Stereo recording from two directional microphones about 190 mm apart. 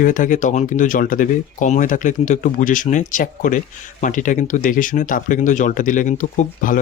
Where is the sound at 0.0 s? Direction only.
45° left (ahead or behind).